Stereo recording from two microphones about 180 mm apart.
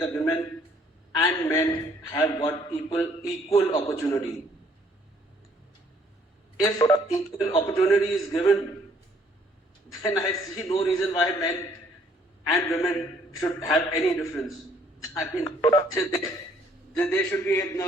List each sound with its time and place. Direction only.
0.1 s a man's voice: 20° left (ahead or behind)
6.6 s a man's voice: 20° left (ahead or behind)
10.0 s a man's voice: 15° left (ahead or behind)
12.7 s a man's voice: 15° left (ahead or behind)
16.9 s a man's voice: 5° left (ahead or behind)